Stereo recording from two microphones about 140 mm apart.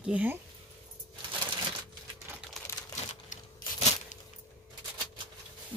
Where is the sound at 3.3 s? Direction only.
65° left (ahead or behind).